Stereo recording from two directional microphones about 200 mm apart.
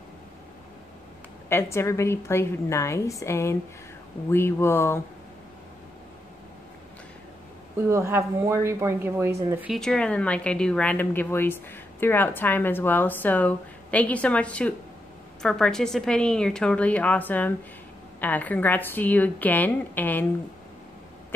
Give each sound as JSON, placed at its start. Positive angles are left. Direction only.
{"t": 1.5, "sound": "speech", "side_deg": 10}
{"t": 7.9, "sound": "speech", "side_deg": -15}
{"t": 9.7, "sound": "a woman's voice", "side_deg": 5}